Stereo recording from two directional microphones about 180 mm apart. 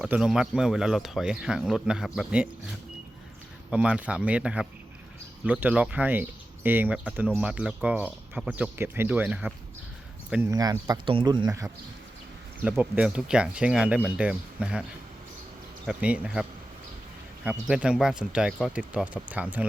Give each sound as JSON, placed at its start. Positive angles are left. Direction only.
{"t": 0.0, "sound": "speech", "side_deg": -5}
{"t": 3.7, "sound": "speech", "side_deg": -5}
{"t": 10.5, "sound": "speech", "side_deg": -20}
{"t": 12.6, "sound": "speech", "side_deg": -10}
{"t": 15.9, "sound": "speech", "side_deg": -5}